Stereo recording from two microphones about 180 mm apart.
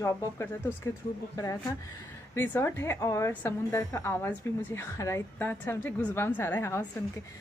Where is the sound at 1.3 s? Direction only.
20° left (ahead or behind).